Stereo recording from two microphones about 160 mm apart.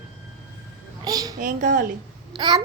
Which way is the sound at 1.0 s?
25° right (ahead or behind).